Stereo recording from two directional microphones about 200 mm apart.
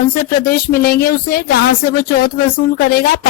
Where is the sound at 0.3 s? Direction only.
45° left (ahead or behind).